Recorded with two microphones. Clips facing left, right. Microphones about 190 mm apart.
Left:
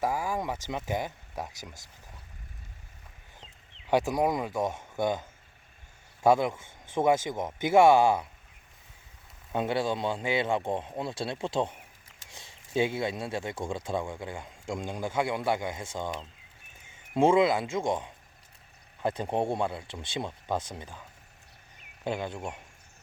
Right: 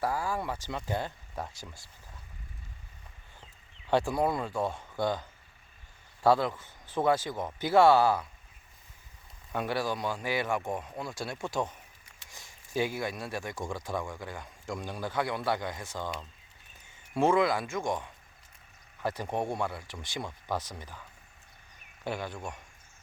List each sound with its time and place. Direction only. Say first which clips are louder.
0.0 s speech: left 2 dB; 15° left (ahead or behind)
3.4 s a man's voice: left 2 dB; 15° left (ahead or behind)
9.5 s a man's voice: left 3 dB; 20° left (ahead or behind)